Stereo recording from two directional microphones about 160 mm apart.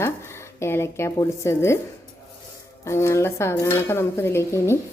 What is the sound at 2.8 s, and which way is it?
A woman's voice, 15° left (ahead or behind).